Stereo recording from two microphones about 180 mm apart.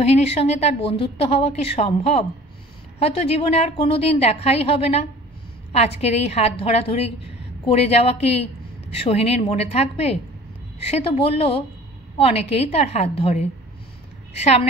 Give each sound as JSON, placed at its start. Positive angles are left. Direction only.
{"t": 0.0, "sound": "a woman's voice", "side_deg": 35}